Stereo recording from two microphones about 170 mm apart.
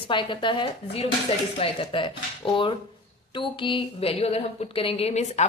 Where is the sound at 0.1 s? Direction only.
30° left (ahead or behind).